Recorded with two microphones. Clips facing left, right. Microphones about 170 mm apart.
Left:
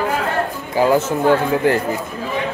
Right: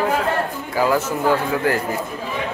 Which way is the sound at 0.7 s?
25° left (ahead or behind).